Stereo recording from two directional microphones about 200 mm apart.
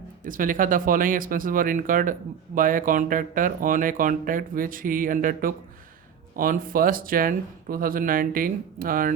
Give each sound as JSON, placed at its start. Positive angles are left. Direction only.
{"t": 0.3, "sound": "speech", "side_deg": -45}